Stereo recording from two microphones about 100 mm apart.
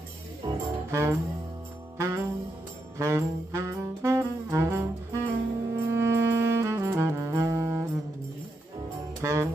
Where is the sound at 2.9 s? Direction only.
25° right (ahead or behind).